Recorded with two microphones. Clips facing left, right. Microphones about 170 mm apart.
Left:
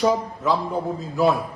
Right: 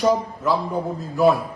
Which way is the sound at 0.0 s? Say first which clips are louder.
Right 1 dB; centre (ahead or behind).